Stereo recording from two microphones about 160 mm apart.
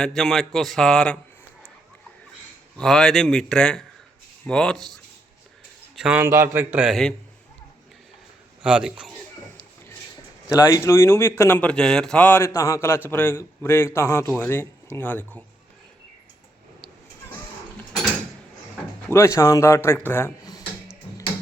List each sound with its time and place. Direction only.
0.0 s a man's voice: centre (ahead or behind)
2.7 s a man's voice: 5° left (ahead or behind)
6.0 s a man's voice: 5° right (ahead or behind)
6.2 s a man's voice: 15° right (ahead or behind)
8.6 s a man's voice: 5° right (ahead or behind)
10.5 s speech: 20° left (ahead or behind)
19.1 s speech: 20° left (ahead or behind)